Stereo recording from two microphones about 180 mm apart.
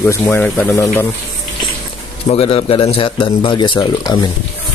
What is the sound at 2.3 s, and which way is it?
A man's voice, 35° left (ahead or behind).